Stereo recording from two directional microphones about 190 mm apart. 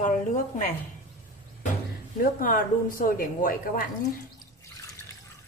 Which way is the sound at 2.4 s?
45° left (ahead or behind).